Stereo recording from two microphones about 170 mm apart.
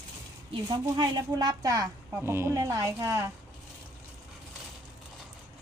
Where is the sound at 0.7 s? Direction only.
25° right (ahead or behind).